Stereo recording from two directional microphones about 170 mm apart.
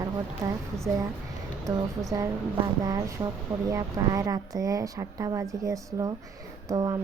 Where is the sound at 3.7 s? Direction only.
20° right (ahead or behind).